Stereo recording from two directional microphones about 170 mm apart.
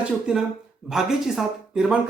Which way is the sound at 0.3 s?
5° right (ahead or behind).